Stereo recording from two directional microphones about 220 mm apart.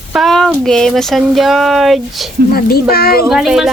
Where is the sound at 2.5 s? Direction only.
45° left (ahead or behind).